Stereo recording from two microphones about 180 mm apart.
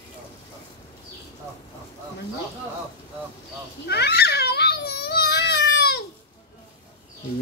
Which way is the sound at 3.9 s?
65° left (ahead or behind).